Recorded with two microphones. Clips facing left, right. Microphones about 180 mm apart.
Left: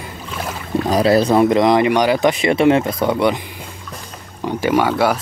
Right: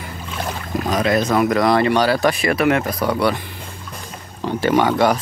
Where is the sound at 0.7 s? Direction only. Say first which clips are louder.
Left 4 dB; 30° left (ahead or behind).